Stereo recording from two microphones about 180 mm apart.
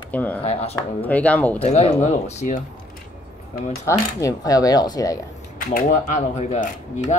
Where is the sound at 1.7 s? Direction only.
35° left (ahead or behind).